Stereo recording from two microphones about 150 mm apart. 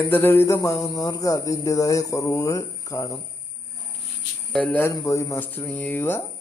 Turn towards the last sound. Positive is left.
turn(degrees=15)  # may be behind; listen again after turning